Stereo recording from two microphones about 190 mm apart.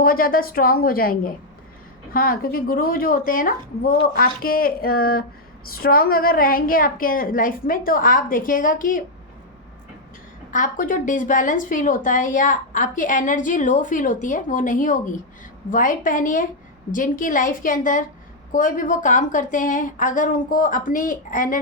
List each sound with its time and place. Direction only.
0.0 s a woman's voice: 50° left (ahead or behind)
10.5 s a woman's voice: 45° left (ahead or behind)